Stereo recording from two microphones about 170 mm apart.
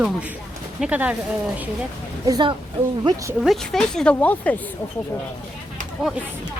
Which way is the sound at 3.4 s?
Centre (ahead or behind).